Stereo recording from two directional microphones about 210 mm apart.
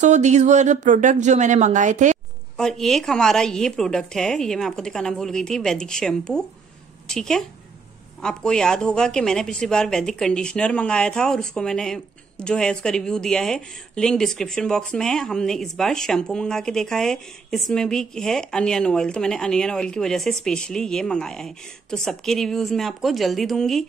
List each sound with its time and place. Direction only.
0.0 s speech: 35° right (ahead or behind)
2.5 s speech: centre (ahead or behind)